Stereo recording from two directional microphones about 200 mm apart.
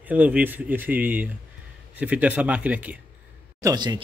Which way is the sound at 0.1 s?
10° right (ahead or behind).